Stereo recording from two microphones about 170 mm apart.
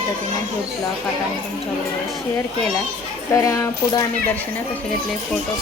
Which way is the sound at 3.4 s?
20° left (ahead or behind).